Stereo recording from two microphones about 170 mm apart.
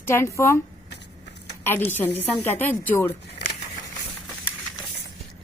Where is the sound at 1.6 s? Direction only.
10° left (ahead or behind).